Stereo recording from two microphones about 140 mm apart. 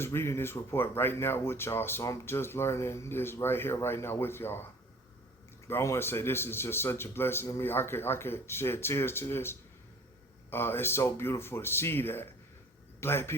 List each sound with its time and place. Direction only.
0.0 s speech: 15° left (ahead or behind)
5.6 s speech: 20° left (ahead or behind)